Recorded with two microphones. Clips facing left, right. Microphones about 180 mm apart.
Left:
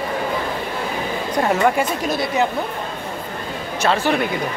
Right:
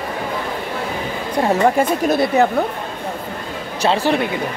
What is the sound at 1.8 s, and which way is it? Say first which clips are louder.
Speech: right 5 dB; 55° right (ahead or behind).